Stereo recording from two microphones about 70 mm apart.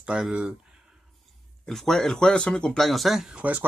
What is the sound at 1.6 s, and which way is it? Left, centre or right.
Speech, centre.